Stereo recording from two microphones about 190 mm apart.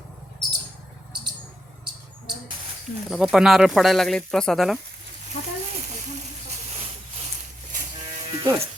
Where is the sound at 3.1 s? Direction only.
Centre (ahead or behind).